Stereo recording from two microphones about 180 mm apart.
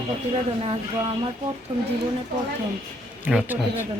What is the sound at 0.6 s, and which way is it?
Speech, 30° right (ahead or behind).